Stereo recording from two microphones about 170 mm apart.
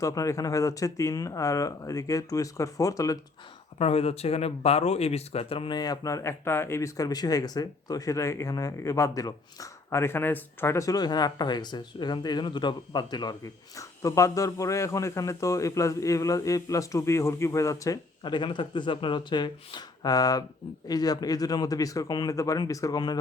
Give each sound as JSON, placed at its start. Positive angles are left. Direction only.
{"t": 0.0, "sound": "speech", "side_deg": 20}
{"t": 3.8, "sound": "speech", "side_deg": 35}